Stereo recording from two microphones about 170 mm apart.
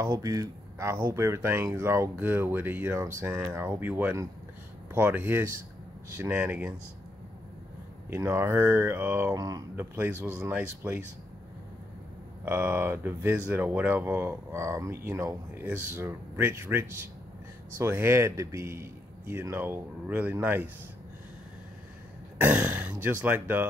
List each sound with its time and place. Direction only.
0.0 s speech: 20° right (ahead or behind)
8.1 s speech: 15° right (ahead or behind)
12.4 s speech: 10° right (ahead or behind)
22.4 s speech: 5° right (ahead or behind)